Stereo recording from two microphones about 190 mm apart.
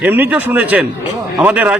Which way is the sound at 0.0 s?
10° right (ahead or behind).